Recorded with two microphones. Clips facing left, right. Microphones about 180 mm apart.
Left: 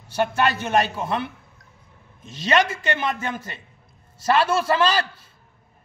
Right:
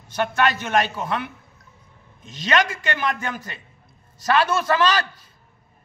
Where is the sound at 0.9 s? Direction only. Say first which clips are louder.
Left 1 dB; 30° left (ahead or behind).